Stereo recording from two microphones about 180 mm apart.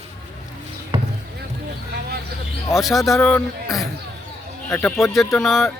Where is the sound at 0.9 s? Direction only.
35° right (ahead or behind).